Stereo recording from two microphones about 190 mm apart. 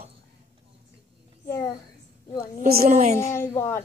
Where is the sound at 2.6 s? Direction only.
50° right (ahead or behind).